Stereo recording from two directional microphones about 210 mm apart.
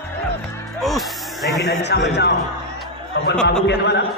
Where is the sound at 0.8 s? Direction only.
Centre (ahead or behind).